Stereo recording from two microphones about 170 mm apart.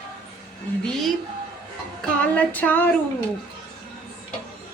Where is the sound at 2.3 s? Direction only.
10° left (ahead or behind).